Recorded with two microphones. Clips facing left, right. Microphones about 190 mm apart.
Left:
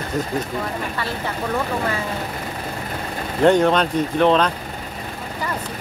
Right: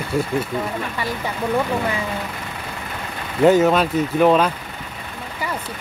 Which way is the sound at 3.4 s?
5° right (ahead or behind).